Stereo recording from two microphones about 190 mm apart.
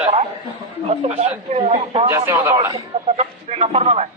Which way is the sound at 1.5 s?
30° right (ahead or behind).